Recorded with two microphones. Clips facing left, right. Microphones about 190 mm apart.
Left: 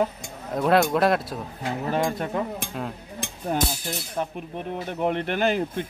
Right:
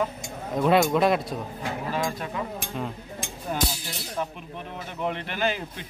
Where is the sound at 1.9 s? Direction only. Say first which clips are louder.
Left 5 dB; 60° left (ahead or behind).